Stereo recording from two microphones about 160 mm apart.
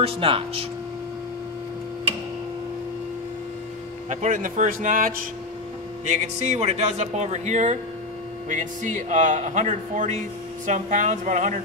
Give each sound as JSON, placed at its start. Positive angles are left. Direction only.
{"t": 0.0, "sound": "speech", "side_deg": -35}
{"t": 4.1, "sound": "speech", "side_deg": -50}
{"t": 6.0, "sound": "speech", "side_deg": -45}